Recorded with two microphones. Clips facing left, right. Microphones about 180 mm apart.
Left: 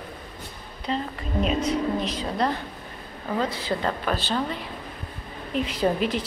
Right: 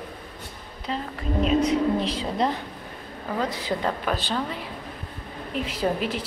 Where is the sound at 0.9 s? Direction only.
5° right (ahead or behind).